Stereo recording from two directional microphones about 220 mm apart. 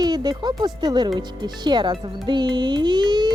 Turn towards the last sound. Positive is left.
turn(degrees=-20)  # may be behind; listen again after turning